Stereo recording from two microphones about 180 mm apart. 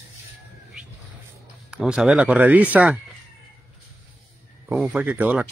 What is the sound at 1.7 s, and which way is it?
Speech, 5° right (ahead or behind).